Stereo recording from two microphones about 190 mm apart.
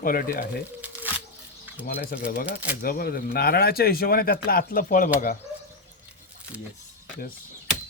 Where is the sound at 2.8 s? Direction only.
50° left (ahead or behind).